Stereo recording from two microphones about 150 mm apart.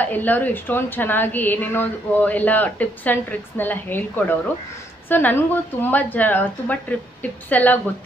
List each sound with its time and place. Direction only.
0.0 s a woman's voice: 10° left (ahead or behind)